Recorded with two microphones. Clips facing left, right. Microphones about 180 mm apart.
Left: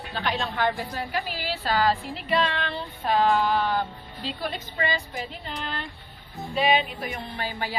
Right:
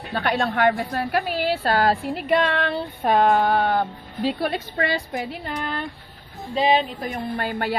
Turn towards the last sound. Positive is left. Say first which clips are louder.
# right 6 dB
turn(degrees=-60)  # may be behind; listen again after turning